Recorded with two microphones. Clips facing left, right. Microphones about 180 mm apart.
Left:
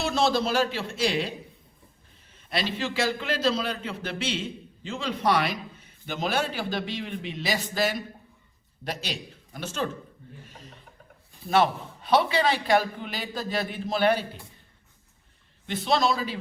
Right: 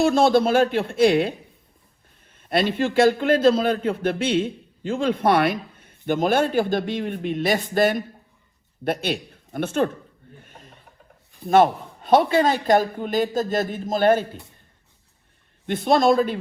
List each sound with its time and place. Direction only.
0.0 s speech: 50° right (ahead or behind)
2.3 s a man's voice: 55° right (ahead or behind)
10.4 s a sound: 55° right (ahead or behind)
11.4 s a man's voice: 50° right (ahead or behind)
15.6 s a man's voice: 50° right (ahead or behind)